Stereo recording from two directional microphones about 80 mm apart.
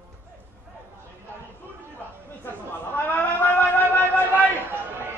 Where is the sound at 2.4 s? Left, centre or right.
Left.